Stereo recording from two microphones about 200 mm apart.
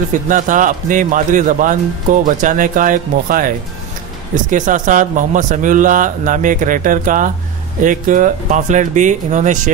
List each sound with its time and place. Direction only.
0.3 s speech: 40° right (ahead or behind)